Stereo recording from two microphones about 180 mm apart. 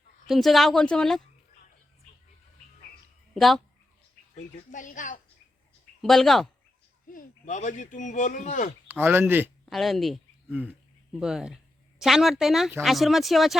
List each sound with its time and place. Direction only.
0.3 s speech: centre (ahead or behind)
3.3 s speech: centre (ahead or behind)
4.4 s a woman's voice: 45° left (ahead or behind)
6.0 s speech: centre (ahead or behind)
7.1 s speech: 45° left (ahead or behind)
8.9 s speech: 10° right (ahead or behind)
9.6 s speech: centre (ahead or behind)